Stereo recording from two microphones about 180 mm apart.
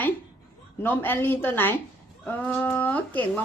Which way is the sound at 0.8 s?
10° left (ahead or behind).